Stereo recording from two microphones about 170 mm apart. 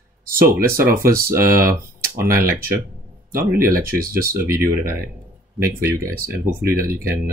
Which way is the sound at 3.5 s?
60° right (ahead or behind).